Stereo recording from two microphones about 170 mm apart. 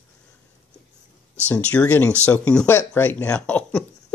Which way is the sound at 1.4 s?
10° left (ahead or behind).